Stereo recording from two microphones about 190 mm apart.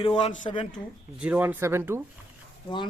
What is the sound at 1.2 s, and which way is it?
Speech, 10° right (ahead or behind).